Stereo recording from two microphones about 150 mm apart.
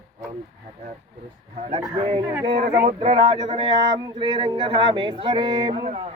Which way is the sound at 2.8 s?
45° right (ahead or behind).